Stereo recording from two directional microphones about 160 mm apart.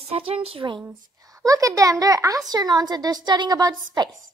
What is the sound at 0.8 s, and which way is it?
A woman's voice, 20° right (ahead or behind).